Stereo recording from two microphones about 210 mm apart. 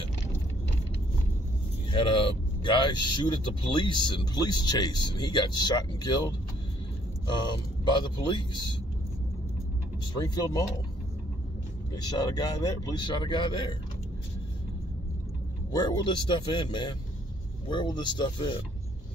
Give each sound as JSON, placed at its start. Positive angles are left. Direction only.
{"t": 1.9, "sound": "speech", "side_deg": 25}
{"t": 7.2, "sound": "speech", "side_deg": 20}
{"t": 10.1, "sound": "speech", "side_deg": 20}
{"t": 11.9, "sound": "speech", "side_deg": 20}
{"t": 15.7, "sound": "speech", "side_deg": 20}